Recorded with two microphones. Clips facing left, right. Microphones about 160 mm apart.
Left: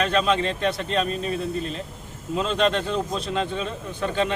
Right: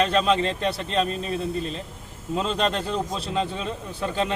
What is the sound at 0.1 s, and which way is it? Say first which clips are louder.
Speech: even; centre (ahead or behind).